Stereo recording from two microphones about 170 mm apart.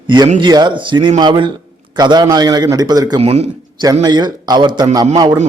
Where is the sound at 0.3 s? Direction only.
25° right (ahead or behind).